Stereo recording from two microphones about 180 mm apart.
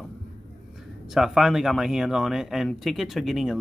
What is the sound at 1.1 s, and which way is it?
Speech, centre (ahead or behind).